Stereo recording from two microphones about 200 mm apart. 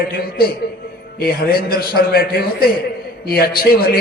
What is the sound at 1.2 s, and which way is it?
A man's voice, 50° left (ahead or behind).